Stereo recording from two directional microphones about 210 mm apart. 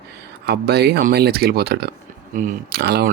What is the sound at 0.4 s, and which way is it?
Speech, 50° right (ahead or behind).